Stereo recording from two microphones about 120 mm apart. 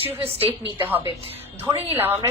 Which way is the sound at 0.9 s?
15° right (ahead or behind).